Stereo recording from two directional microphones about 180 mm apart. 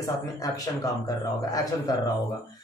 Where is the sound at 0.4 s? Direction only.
20° left (ahead or behind).